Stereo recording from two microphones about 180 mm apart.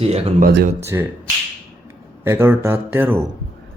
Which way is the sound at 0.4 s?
55° right (ahead or behind).